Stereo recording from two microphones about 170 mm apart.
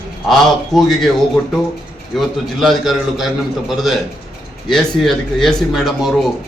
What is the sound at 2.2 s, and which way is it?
A man's voice, centre (ahead or behind).